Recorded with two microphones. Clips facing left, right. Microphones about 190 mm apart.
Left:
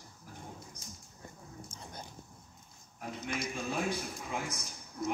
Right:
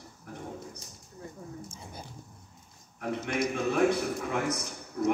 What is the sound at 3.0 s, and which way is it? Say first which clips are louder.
A man's voice: right 8 dB; 65° right (ahead or behind).